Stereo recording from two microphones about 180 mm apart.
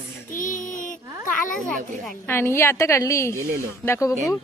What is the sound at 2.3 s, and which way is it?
Speech, 15° left (ahead or behind).